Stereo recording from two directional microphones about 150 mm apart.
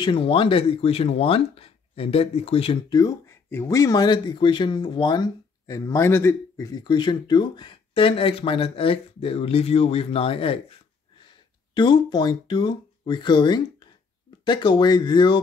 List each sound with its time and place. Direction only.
0.0 s speech: 35° left (ahead or behind)
2.9 s speech: 25° left (ahead or behind)
11.7 s speech: 30° left (ahead or behind)